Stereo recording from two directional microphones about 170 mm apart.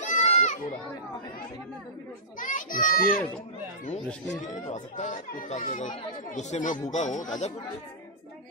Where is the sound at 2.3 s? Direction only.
50° left (ahead or behind).